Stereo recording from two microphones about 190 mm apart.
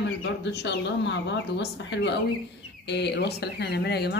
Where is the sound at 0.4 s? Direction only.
65° left (ahead or behind).